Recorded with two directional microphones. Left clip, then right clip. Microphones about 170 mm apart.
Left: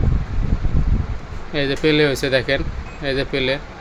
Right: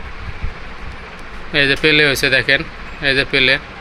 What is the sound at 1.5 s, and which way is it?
Speech, 5° left (ahead or behind).